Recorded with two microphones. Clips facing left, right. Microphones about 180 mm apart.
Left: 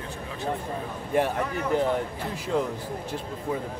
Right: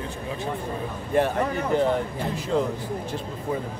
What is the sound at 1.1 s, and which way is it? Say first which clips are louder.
Speech: right 2 dB; 10° left (ahead or behind).